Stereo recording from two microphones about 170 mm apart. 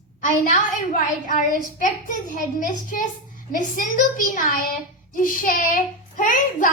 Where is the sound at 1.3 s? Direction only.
50° left (ahead or behind).